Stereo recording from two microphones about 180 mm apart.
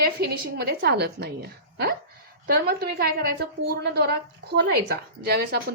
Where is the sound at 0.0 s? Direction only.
65° right (ahead or behind).